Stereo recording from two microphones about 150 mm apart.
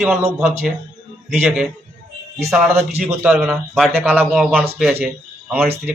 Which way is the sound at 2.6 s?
15° right (ahead or behind).